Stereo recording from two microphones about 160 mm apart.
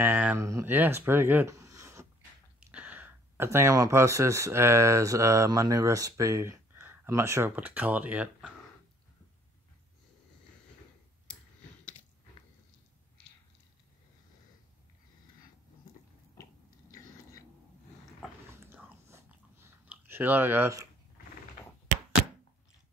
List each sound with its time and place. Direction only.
0.0 s speech: 10° right (ahead or behind)
16.9 s biting: 20° left (ahead or behind)
18.5 s chewing: 15° right (ahead or behind)